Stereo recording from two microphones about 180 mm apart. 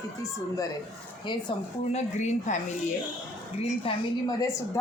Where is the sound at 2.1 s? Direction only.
40° left (ahead or behind).